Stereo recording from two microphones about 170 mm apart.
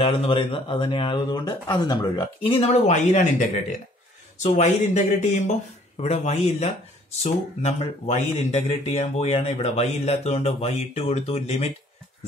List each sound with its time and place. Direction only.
0.0 s speech: 30° left (ahead or behind)